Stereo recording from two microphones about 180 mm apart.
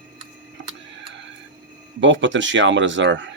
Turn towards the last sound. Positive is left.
turn(degrees=-90)